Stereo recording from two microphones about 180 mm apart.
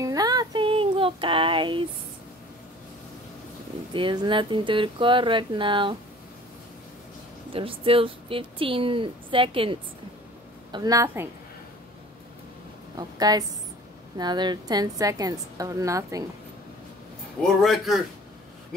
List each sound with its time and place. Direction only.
0.0 s a sound: 20° right (ahead or behind)
3.9 s speech: 25° right (ahead or behind)
7.5 s speech: 30° right (ahead or behind)
12.9 s speech: 20° right (ahead or behind)
17.4 s a man's voice: centre (ahead or behind)